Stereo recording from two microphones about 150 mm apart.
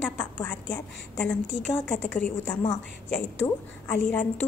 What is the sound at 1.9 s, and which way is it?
Speech, 10° left (ahead or behind).